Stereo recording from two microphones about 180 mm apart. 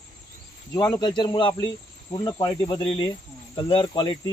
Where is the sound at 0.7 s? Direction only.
25° left (ahead or behind).